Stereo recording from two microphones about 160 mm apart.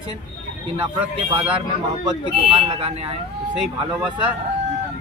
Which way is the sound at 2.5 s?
35° right (ahead or behind).